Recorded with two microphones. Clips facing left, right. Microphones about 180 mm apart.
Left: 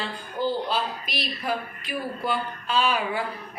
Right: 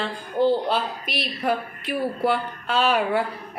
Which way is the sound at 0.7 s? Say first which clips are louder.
Right 3 dB; 65° right (ahead or behind).